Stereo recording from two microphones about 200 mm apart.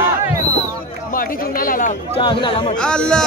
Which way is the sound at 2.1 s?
25° left (ahead or behind).